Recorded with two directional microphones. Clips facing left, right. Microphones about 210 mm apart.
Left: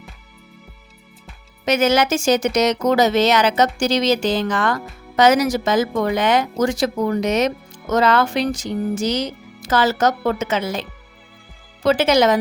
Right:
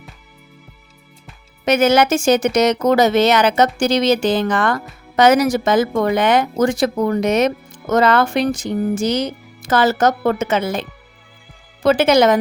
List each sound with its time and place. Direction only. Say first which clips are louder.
1.6 s speech: right 3 dB; 55° right (ahead or behind)